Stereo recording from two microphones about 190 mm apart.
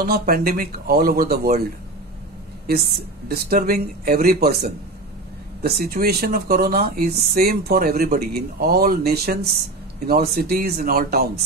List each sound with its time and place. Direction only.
0.0 s speech: 50° right (ahead or behind)
3.3 s speech: 50° right (ahead or behind)